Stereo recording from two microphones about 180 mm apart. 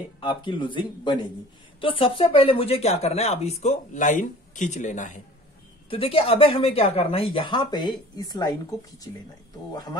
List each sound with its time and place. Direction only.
0.2 s speech: 25° left (ahead or behind); by 5.2 s 45° left (ahead or behind)
5.9 s speech: 30° left (ahead or behind)